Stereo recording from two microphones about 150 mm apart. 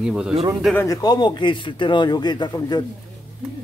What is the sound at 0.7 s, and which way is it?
Speech, 25° left (ahead or behind).